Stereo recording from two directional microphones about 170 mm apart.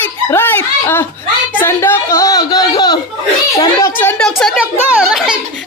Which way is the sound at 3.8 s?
10° left (ahead or behind).